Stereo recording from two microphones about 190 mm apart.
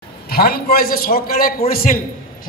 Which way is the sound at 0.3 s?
50° left (ahead or behind).